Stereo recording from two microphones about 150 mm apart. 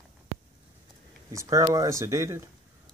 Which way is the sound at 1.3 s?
20° right (ahead or behind).